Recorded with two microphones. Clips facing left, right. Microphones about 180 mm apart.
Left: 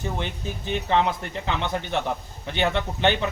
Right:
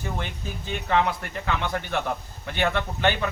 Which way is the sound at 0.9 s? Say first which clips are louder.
Even; 20° left (ahead or behind).